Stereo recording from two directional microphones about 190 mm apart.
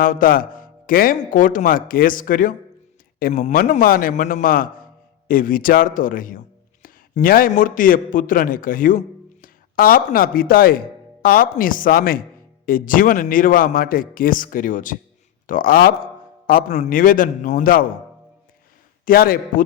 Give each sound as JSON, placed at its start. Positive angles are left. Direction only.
{"t": 0.0, "sound": "speech", "side_deg": 45}
{"t": 19.0, "sound": "speech", "side_deg": 50}